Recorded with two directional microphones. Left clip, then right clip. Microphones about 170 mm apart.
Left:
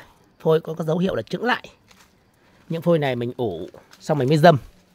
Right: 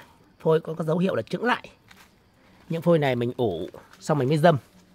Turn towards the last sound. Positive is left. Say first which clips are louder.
# left 5 dB
turn(degrees=30)  # may be behind; listen again after turning